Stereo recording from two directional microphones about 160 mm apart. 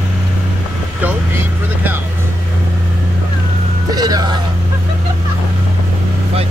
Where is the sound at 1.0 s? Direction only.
10° right (ahead or behind).